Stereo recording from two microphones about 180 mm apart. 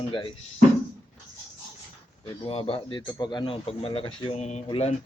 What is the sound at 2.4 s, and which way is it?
Speech, 30° left (ahead or behind).